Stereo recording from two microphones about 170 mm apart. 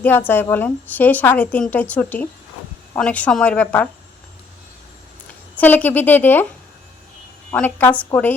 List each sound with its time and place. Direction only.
0.0 s a woman's voice: 10° left (ahead or behind)
5.5 s a woman's voice: 10° left (ahead or behind)
7.5 s a woman's voice: 10° left (ahead or behind)